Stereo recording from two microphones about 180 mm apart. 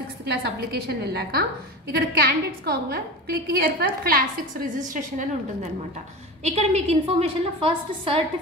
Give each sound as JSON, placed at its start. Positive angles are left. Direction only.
{"t": 0.2, "sound": "a woman's voice", "side_deg": -65}
{"t": 6.4, "sound": "a woman's voice", "side_deg": -35}